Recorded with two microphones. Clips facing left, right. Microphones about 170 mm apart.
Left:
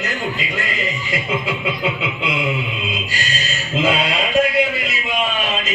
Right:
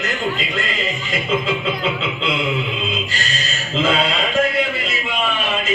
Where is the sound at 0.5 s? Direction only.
15° left (ahead or behind).